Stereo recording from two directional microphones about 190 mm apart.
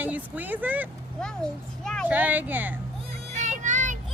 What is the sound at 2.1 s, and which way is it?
Speech, 10° right (ahead or behind).